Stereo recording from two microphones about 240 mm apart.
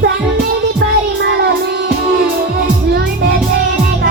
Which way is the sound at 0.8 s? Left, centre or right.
Right.